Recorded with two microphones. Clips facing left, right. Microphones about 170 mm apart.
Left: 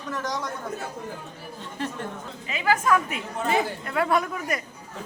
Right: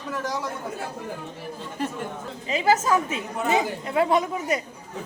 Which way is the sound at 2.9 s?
25° right (ahead or behind).